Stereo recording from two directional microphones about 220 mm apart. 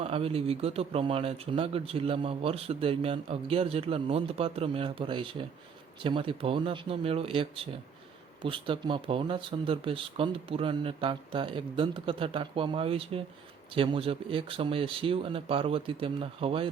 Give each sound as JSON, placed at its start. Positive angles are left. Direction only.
{"t": 0.0, "sound": "speech", "side_deg": -25}